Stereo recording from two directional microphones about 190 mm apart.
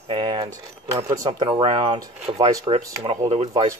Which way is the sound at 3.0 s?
35° right (ahead or behind).